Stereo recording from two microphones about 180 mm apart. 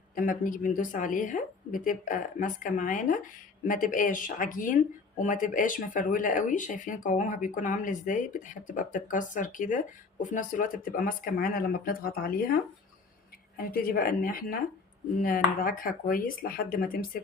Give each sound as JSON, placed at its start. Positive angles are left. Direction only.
{"t": 0.2, "sound": "speech", "side_deg": 50}
{"t": 13.6, "sound": "a woman's voice", "side_deg": 55}